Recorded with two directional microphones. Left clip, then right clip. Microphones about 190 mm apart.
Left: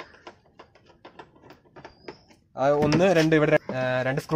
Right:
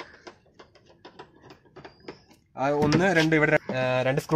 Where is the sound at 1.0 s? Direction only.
Centre (ahead or behind).